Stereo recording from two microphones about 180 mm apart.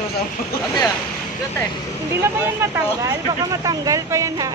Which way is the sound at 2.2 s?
15° right (ahead or behind).